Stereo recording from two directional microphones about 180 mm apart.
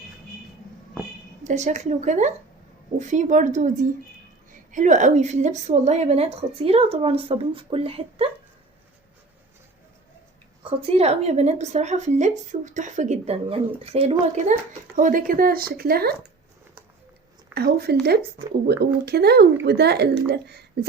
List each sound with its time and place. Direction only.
1.5 s a woman's voice: 40° right (ahead or behind)
10.6 s a woman's voice: 30° right (ahead or behind)
14.9 s speech: 50° right (ahead or behind)
17.5 s speech: 60° right (ahead or behind)